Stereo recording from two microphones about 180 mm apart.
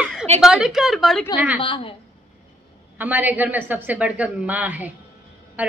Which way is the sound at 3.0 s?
10° right (ahead or behind).